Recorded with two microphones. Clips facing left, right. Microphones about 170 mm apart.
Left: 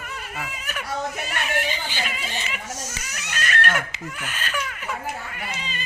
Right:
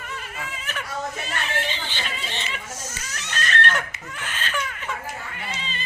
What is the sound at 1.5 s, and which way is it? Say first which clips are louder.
Speech: left 2 dB; 10° left (ahead or behind).